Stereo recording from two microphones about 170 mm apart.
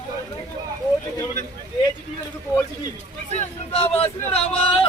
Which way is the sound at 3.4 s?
35° left (ahead or behind).